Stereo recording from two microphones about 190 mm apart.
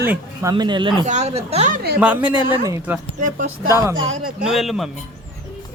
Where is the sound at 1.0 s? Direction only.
35° right (ahead or behind).